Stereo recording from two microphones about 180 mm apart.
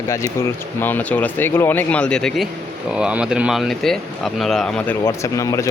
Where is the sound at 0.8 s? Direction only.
10° left (ahead or behind).